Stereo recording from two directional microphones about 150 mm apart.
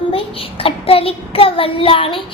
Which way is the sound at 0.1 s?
40° left (ahead or behind).